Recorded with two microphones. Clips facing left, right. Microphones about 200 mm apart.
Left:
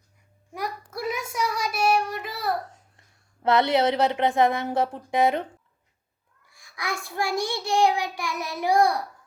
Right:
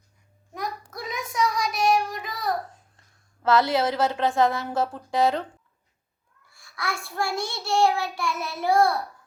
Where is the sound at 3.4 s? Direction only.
20° left (ahead or behind).